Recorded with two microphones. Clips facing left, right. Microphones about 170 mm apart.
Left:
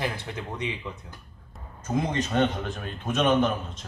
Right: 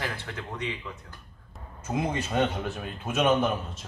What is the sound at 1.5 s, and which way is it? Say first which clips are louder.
A man's voice: left 3 dB; 5° right (ahead or behind).